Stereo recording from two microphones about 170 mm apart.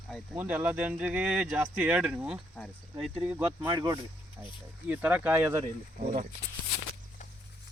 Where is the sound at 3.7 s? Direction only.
25° right (ahead or behind).